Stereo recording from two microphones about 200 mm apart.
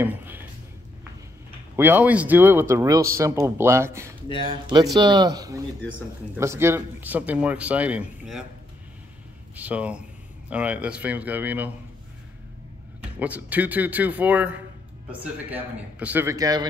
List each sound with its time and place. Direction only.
0.0 s a sound: 10° right (ahead or behind)
1.8 s speech: 10° right (ahead or behind)
4.5 s a man's voice: 25° right (ahead or behind)
5.8 s a man's voice: 10° left (ahead or behind)
6.3 s speech: 15° right (ahead or behind)
9.6 s speech: 5° right (ahead or behind)
13.2 s speech: 10° right (ahead or behind)